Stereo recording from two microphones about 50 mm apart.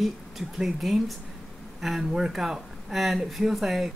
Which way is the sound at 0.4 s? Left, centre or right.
Centre.